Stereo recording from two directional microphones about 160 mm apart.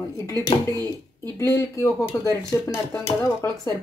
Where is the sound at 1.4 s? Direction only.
20° left (ahead or behind).